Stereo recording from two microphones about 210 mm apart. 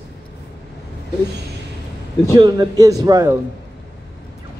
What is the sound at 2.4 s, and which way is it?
A man's voice, 20° right (ahead or behind).